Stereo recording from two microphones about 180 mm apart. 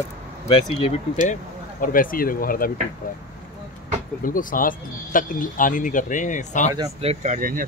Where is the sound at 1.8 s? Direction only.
50° left (ahead or behind).